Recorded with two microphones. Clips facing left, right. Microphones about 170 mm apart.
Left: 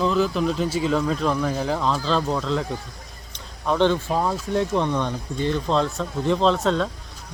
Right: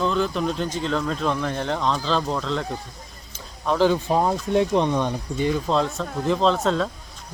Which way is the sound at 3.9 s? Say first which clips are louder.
Right 2 dB; 20° right (ahead or behind).